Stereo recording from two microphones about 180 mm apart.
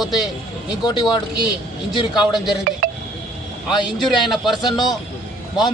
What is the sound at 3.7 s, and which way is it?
Speech, centre (ahead or behind).